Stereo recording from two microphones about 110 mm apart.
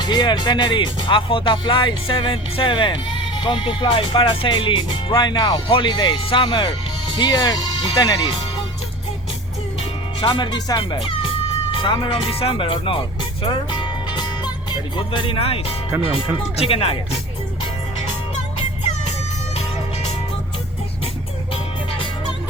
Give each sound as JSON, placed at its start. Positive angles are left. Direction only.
{"t": 0.0, "sound": "speech", "side_deg": 40}
{"t": 10.2, "sound": "speech", "side_deg": 45}
{"t": 11.0, "sound": "music", "side_deg": 55}
{"t": 12.0, "sound": "speech", "side_deg": 55}